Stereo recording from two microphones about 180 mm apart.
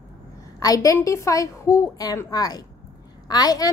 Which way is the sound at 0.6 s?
20° left (ahead or behind).